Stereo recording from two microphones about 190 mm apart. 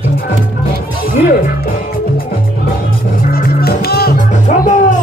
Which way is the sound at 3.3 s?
55° left (ahead or behind).